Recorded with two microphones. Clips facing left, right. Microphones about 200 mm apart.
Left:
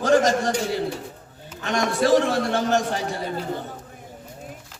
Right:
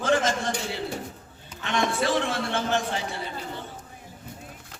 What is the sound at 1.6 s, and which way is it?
A man's voice, 40° left (ahead or behind).